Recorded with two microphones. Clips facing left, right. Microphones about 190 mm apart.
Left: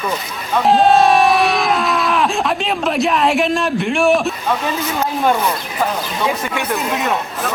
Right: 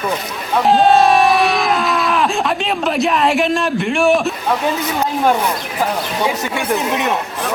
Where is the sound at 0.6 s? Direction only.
Centre (ahead or behind).